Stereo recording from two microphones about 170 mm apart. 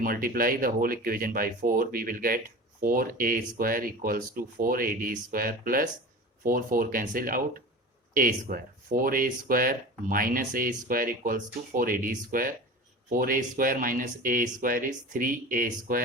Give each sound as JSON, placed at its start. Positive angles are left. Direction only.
{"t": 0.0, "sound": "speech", "side_deg": -55}